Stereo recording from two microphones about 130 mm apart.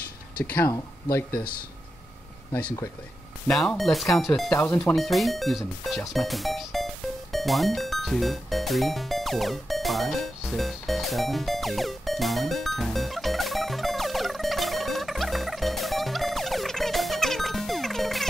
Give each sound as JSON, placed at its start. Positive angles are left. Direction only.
{"t": 0.4, "sound": "speech", "side_deg": 15}
{"t": 0.7, "sound": "speech", "side_deg": 25}
{"t": 2.6, "sound": "speech", "side_deg": 30}
{"t": 3.4, "sound": "speech", "side_deg": 5}
{"t": 4.6, "sound": "speech", "side_deg": 20}
{"t": 4.9, "sound": "speech", "side_deg": 0}
{"t": 7.3, "sound": "music", "side_deg": 0}